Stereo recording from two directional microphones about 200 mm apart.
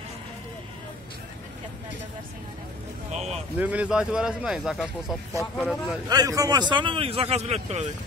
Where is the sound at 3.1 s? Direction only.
35° right (ahead or behind).